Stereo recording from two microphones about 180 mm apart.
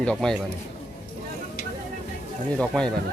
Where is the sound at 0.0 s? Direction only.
5° left (ahead or behind).